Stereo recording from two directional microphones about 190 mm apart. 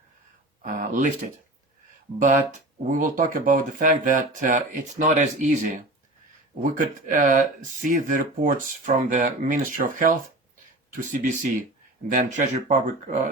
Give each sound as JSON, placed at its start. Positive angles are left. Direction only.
{"t": 0.6, "sound": "speech", "side_deg": -45}
{"t": 2.1, "sound": "speech", "side_deg": -40}